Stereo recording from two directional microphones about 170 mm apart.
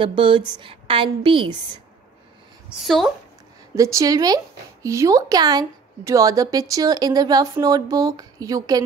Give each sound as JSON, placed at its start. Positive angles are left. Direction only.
{"t": 0.0, "sound": "a woman's voice", "side_deg": -30}
{"t": 2.8, "sound": "a woman's voice", "side_deg": 0}
{"t": 3.7, "sound": "a woman's voice", "side_deg": -20}